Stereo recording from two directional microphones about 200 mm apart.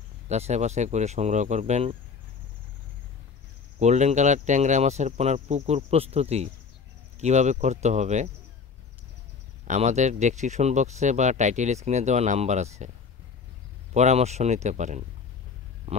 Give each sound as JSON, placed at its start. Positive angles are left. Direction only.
{"t": 0.3, "sound": "speech", "side_deg": -35}
{"t": 3.8, "sound": "speech", "side_deg": -35}
{"t": 9.7, "sound": "speech", "side_deg": -35}
{"t": 13.9, "sound": "speech", "side_deg": -35}